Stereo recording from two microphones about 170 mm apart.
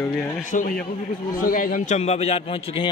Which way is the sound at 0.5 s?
50° left (ahead or behind).